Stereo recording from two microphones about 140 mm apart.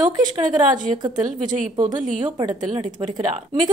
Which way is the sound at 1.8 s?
65° right (ahead or behind).